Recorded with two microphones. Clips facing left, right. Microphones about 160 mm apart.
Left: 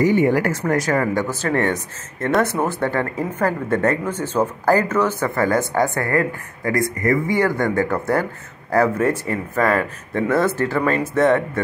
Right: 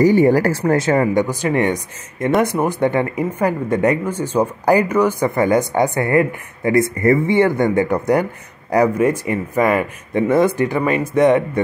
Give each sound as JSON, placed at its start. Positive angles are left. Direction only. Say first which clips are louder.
{"t": 0.0, "sound": "speech", "louder": "right 4 dB", "side_deg": -35}